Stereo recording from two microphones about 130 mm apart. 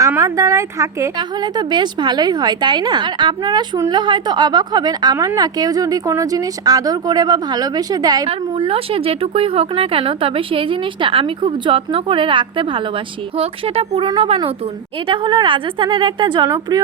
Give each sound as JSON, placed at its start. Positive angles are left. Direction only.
{"t": 0.2, "sound": "speech", "side_deg": -25}
{"t": 1.1, "sound": "a woman's voice", "side_deg": -35}
{"t": 8.3, "sound": "a woman's voice", "side_deg": -45}